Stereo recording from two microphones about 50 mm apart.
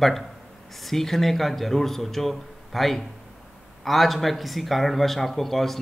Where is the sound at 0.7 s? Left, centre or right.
Centre.